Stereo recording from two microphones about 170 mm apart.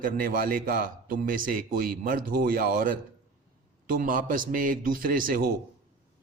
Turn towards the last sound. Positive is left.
turn(degrees=-55)  # may be behind; listen again after turning